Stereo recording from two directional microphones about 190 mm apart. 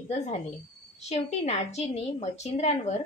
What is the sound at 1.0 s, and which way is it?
A woman's voice, 35° left (ahead or behind).